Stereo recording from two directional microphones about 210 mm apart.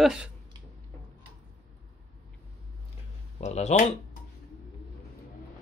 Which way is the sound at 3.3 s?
35° left (ahead or behind).